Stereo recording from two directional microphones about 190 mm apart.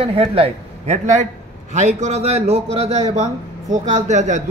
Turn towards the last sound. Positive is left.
turn(degrees=-40)  # may be behind; listen again after turning